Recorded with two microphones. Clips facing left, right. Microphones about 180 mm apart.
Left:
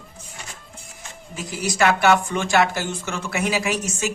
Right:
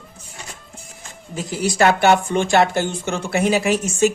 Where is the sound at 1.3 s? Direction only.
30° right (ahead or behind).